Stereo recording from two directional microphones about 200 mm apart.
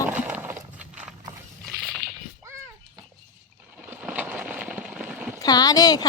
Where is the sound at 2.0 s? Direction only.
45° right (ahead or behind).